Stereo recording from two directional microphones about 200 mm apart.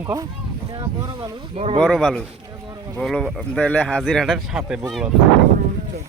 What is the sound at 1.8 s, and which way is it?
Speech, centre (ahead or behind).